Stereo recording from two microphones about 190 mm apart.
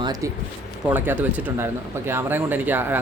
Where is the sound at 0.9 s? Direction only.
10° right (ahead or behind).